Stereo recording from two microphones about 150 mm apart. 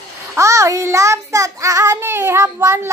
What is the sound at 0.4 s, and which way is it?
Child singing, 20° right (ahead or behind).